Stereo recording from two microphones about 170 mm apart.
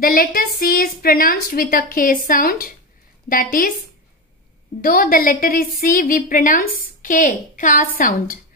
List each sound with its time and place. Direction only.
0.0 s a woman's voice: 60° left (ahead or behind)
4.8 s a woman's voice: 55° left (ahead or behind)